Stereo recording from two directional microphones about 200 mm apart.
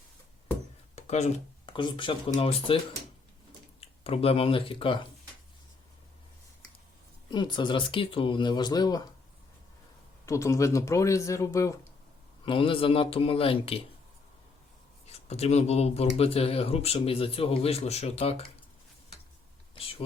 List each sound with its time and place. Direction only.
0.9 s speech: 35° left (ahead or behind)
7.3 s speech: 20° left (ahead or behind)
10.2 s speech: 15° left (ahead or behind)
12.5 s speech: 25° left (ahead or behind)
15.0 s speech: 30° left (ahead or behind)
19.7 s a sound: 30° left (ahead or behind)